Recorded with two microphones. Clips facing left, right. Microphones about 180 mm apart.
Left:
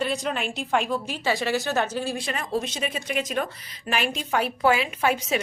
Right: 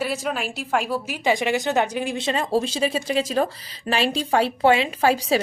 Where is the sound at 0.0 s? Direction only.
5° right (ahead or behind).